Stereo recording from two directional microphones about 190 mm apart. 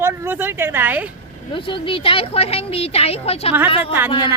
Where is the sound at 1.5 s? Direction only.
25° left (ahead or behind).